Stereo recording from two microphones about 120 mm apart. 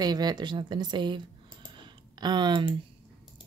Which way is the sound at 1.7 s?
40° right (ahead or behind).